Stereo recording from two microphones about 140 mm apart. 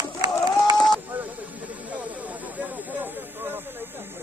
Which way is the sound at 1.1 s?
10° right (ahead or behind).